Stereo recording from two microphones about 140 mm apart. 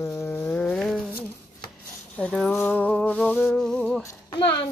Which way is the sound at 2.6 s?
15° left (ahead or behind).